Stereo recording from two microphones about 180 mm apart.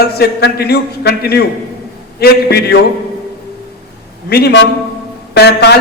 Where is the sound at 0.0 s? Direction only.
65° left (ahead or behind).